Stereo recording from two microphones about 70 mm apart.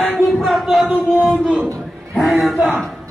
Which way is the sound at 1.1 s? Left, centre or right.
Centre.